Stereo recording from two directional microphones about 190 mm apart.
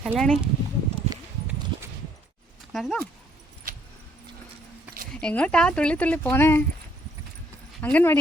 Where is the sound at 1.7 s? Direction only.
25° right (ahead or behind).